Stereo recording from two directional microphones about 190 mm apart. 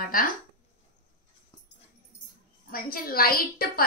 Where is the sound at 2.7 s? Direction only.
50° left (ahead or behind).